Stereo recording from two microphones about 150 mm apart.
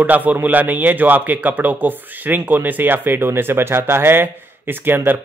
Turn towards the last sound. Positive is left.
turn(degrees=-15)  # may be behind; listen again after turning